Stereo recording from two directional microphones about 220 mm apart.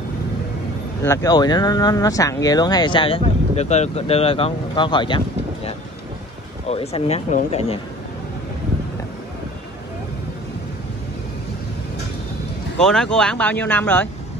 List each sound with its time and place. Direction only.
1.0 s speech: 15° left (ahead or behind)
6.7 s speech: 30° left (ahead or behind)
12.8 s speech: centre (ahead or behind)